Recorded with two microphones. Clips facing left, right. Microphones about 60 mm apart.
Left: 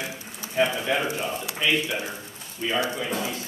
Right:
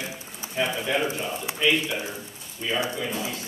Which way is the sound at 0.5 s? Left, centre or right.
Left.